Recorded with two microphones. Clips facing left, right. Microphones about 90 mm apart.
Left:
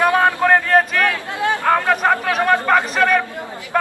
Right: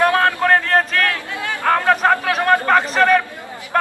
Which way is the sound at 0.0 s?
15° left (ahead or behind).